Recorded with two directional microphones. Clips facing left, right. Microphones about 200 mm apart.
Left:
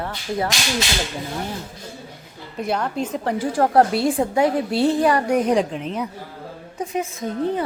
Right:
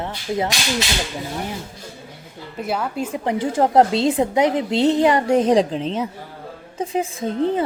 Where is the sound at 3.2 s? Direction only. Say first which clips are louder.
Right 2 dB; 20° right (ahead or behind).